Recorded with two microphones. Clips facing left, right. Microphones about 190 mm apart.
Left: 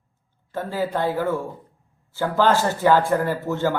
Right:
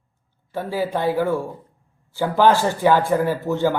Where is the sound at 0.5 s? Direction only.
15° right (ahead or behind).